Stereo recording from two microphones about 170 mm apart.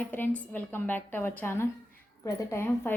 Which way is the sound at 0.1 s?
10° left (ahead or behind).